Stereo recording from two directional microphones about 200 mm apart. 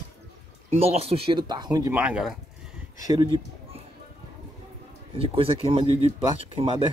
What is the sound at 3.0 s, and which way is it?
Speech, 20° right (ahead or behind).